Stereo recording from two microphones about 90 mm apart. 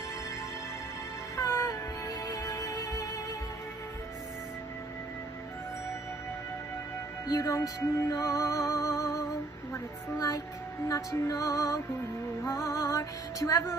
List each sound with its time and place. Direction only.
1.3 s music: 30° left (ahead or behind)
7.2 s music: 35° left (ahead or behind)